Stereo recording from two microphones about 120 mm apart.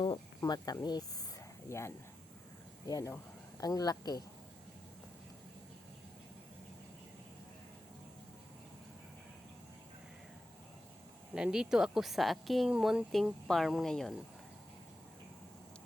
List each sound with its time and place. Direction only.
0.0 s speech: 40° left (ahead or behind)
1.7 s speech: 25° left (ahead or behind)
11.3 s speech: 5° right (ahead or behind)